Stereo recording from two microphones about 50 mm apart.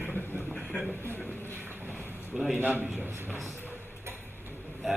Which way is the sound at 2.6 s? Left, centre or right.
Right.